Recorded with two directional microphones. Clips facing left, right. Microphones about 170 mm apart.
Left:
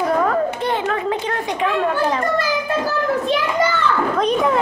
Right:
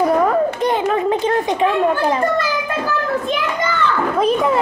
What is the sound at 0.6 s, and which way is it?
Children playing, 15° right (ahead or behind).